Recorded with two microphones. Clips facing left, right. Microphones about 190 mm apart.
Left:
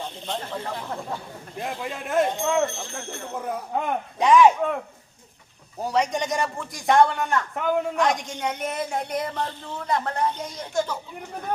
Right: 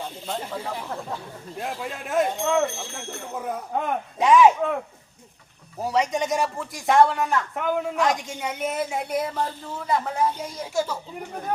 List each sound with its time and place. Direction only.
0.0 s a man's voice: 5° right (ahead or behind)
5.8 s a man's voice: centre (ahead or behind)